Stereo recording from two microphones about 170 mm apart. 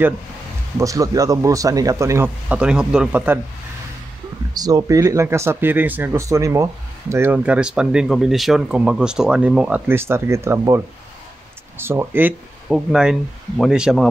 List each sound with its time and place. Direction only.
0.7 s speech: 20° right (ahead or behind)
4.6 s speech: 20° right (ahead or behind); by 14.0 s 5° right (ahead or behind)